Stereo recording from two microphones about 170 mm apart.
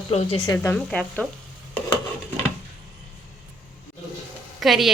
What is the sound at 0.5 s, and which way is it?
Speech, 10° left (ahead or behind).